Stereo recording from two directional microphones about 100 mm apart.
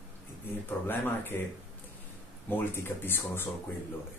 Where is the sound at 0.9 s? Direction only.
20° left (ahead or behind).